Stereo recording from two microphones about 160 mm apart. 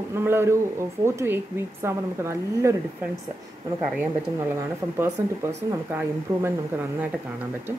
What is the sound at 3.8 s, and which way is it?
Speech, 15° right (ahead or behind).